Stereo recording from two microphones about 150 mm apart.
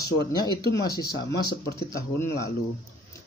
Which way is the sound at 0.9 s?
25° left (ahead or behind).